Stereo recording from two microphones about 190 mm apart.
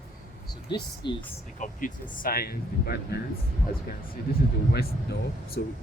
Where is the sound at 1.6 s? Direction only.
40° left (ahead or behind).